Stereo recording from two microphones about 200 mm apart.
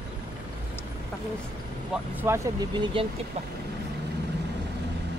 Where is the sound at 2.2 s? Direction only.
10° right (ahead or behind).